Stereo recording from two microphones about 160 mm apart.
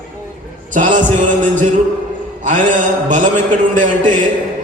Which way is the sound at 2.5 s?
50° right (ahead or behind).